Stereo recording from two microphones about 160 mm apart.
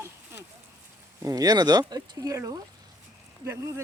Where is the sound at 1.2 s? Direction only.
20° right (ahead or behind).